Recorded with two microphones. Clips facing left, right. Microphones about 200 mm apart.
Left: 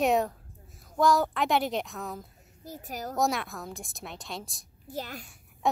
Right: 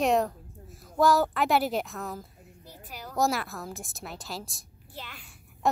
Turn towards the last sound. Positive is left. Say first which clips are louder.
# left 8 dB
turn(degrees=40)  # may be behind; listen again after turning